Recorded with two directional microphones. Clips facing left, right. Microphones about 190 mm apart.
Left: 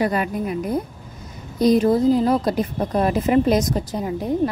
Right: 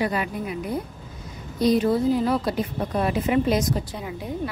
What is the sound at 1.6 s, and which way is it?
A woman's voice, 45° left (ahead or behind).